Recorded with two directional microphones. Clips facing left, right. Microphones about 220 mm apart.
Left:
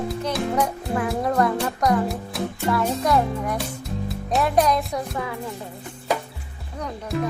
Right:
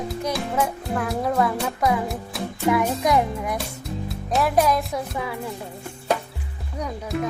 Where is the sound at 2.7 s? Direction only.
15° right (ahead or behind).